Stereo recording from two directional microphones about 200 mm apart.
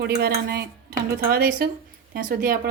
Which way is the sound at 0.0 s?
50° right (ahead or behind).